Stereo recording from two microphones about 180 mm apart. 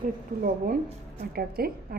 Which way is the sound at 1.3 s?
55° right (ahead or behind).